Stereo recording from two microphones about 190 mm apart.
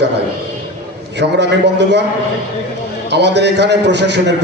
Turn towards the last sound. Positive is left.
turn(degrees=-65)  # may be behind; listen again after turning